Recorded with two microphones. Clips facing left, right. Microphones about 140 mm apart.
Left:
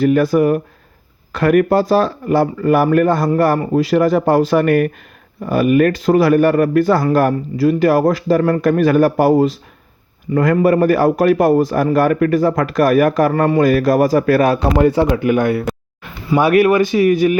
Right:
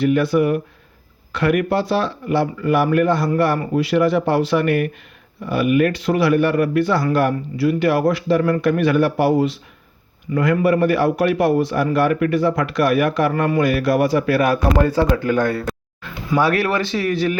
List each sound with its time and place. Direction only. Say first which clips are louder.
0.0 s speech: left 4 dB; 45° left (ahead or behind)
14.5 s speech: left 3 dB; 25° left (ahead or behind)